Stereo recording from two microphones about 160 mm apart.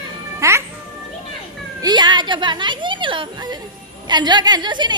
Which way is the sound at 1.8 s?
25° right (ahead or behind).